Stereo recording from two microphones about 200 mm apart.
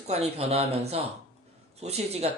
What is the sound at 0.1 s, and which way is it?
Speech, 30° right (ahead or behind).